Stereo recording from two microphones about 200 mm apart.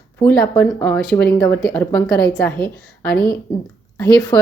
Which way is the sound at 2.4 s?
5° left (ahead or behind).